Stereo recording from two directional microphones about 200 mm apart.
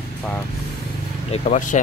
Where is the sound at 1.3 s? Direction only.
35° left (ahead or behind).